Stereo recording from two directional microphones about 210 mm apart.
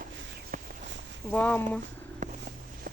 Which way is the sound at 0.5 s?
40° right (ahead or behind).